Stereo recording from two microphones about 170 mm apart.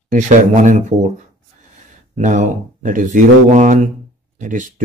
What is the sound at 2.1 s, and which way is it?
Speech, 45° right (ahead or behind).